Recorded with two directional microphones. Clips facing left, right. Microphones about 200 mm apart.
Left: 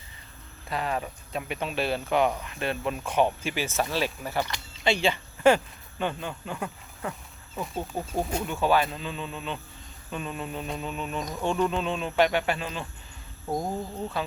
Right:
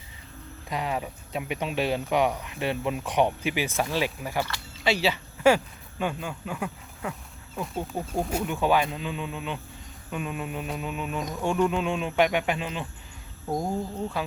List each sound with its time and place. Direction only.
0.7 s speech: 15° right (ahead or behind)
4.4 s speech: 15° left (ahead or behind)
4.8 s speech: 5° right (ahead or behind)
13.5 s speech: 5° left (ahead or behind)